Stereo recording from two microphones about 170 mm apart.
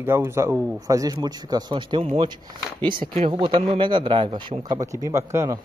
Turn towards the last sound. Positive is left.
turn(degrees=-15)  # may be behind; listen again after turning